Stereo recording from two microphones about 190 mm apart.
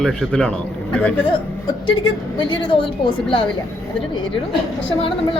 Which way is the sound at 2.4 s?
25° left (ahead or behind).